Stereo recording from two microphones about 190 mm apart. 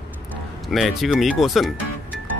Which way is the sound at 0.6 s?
Centre (ahead or behind).